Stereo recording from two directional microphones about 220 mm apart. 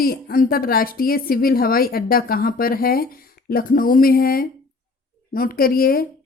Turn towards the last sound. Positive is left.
turn(degrees=40)  # may be behind; listen again after turning